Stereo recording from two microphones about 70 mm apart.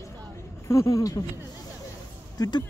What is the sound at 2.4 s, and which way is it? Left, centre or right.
Speech, left.